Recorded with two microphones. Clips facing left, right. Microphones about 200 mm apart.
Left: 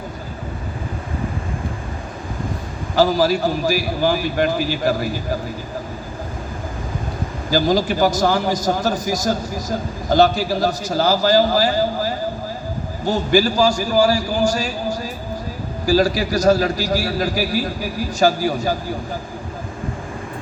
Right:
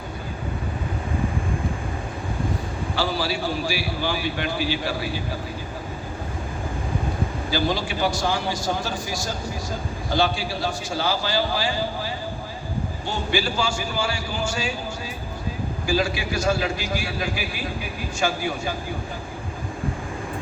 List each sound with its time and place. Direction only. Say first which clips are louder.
2.9 s a man's voice: left 10 dB; 40° left (ahead or behind)
7.5 s a man's voice: left 9 dB; 40° left (ahead or behind)